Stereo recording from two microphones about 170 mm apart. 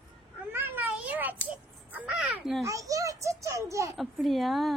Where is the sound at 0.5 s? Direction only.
10° right (ahead or behind).